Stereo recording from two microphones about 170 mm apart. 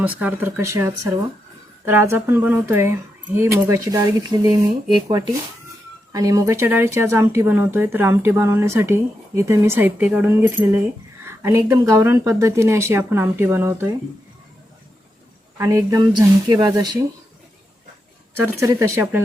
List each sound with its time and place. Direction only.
0.2 s speech: 10° right (ahead or behind)
15.5 s speech: 15° right (ahead or behind)
18.3 s speech: 15° right (ahead or behind)